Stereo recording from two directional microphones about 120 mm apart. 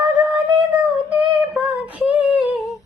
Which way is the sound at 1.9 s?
10° right (ahead or behind).